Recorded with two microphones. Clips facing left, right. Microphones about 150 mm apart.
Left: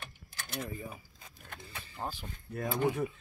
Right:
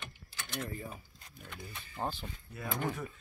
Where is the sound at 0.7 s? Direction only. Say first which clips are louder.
Left 1 dB; 15° left (ahead or behind).